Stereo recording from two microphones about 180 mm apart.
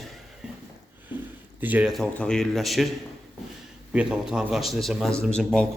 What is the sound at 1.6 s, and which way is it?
A man's voice, 5° right (ahead or behind).